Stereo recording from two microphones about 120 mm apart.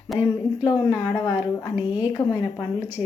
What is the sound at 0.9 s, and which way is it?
A woman's voice, 10° right (ahead or behind).